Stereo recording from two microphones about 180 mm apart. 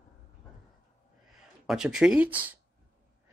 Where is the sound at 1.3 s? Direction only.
5° right (ahead or behind).